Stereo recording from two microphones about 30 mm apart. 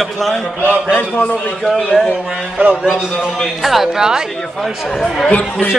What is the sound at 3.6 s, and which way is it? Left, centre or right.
Speech, centre.